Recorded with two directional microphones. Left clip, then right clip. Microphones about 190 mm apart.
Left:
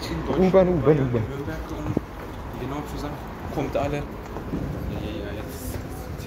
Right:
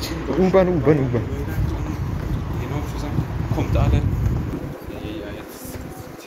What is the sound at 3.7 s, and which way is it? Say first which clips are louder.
Speech: left 2 dB; 55° left (ahead or behind).